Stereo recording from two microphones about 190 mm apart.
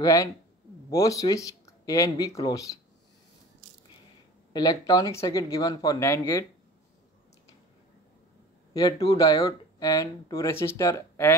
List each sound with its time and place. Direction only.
0.0 s speech: 15° left (ahead or behind)
4.5 s speech: 20° left (ahead or behind)
8.7 s speech: 20° left (ahead or behind)